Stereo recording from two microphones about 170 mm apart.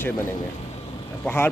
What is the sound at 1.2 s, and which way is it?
Speech, 10° left (ahead or behind).